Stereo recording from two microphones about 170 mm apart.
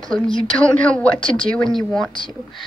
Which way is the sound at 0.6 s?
5° left (ahead or behind).